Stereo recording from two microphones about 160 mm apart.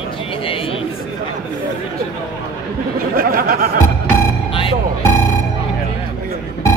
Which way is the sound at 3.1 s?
65° right (ahead or behind).